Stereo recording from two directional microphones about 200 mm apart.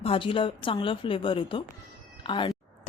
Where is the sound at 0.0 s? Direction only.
30° left (ahead or behind).